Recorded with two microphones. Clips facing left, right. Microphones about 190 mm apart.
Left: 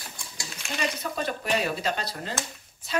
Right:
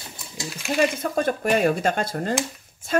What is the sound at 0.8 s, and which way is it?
Speech, 50° right (ahead or behind).